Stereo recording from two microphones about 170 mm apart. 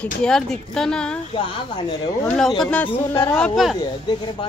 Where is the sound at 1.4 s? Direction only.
25° left (ahead or behind).